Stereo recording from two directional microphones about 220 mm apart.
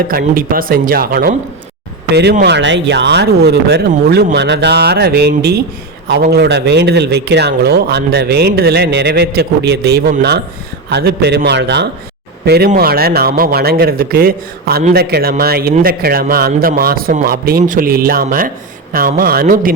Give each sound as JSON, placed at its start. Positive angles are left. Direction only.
{"t": 0.1, "sound": "speech", "side_deg": -40}